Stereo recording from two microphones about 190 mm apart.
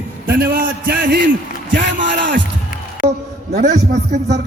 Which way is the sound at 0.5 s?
55° right (ahead or behind).